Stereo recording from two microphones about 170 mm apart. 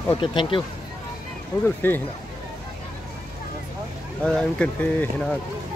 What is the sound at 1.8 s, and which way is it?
Speech, 10° left (ahead or behind).